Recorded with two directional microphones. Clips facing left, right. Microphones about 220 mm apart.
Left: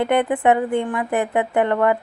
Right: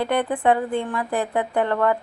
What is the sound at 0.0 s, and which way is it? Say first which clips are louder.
A woman's voice: left 3 dB; 20° left (ahead or behind).